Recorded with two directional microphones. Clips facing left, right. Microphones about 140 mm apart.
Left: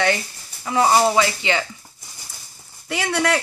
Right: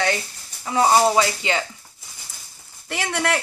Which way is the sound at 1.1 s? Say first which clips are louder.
Left 1 dB; 35° right (ahead or behind).